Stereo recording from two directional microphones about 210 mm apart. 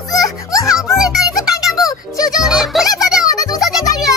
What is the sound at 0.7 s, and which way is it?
Music, centre (ahead or behind).